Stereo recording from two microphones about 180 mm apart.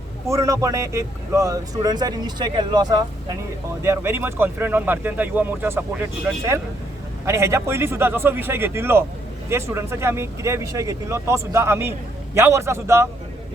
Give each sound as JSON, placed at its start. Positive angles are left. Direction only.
{"t": 0.3, "sound": "speech", "side_deg": -15}